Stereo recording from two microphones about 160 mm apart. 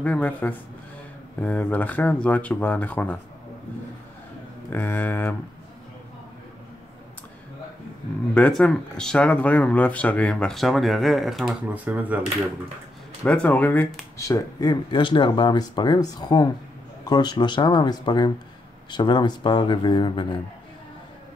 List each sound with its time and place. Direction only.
0.0 s speech: 10° left (ahead or behind)
4.6 s speech: 10° left (ahead or behind)
8.4 s speech: 5° left (ahead or behind); by 12.2 s 10° right (ahead or behind)
13.2 s speech: 10° left (ahead or behind)
14.1 s speech: 20° left (ahead or behind)